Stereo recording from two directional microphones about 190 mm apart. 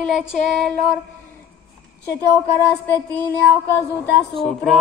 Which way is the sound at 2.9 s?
10° left (ahead or behind).